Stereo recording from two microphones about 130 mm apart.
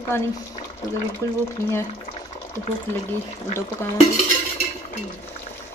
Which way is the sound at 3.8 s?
20° left (ahead or behind).